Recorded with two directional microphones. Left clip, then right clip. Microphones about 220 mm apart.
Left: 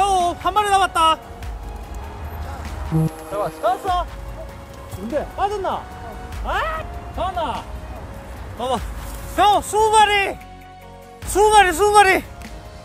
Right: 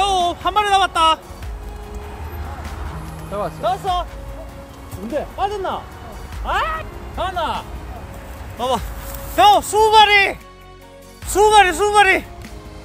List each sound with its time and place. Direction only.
0.0 s a sound: 5° right (ahead or behind)
3.6 s speech: 15° right (ahead or behind)
5.1 s speech: 10° right (ahead or behind); by 12.3 s 20° left (ahead or behind)